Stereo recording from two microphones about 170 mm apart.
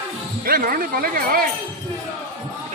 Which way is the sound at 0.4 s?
60° right (ahead or behind).